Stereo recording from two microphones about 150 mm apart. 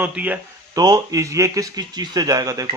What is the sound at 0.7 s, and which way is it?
A man's voice, 25° right (ahead or behind).